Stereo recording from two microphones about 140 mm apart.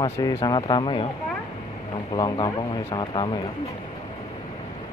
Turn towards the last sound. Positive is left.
turn(degrees=35)  # may be behind; listen again after turning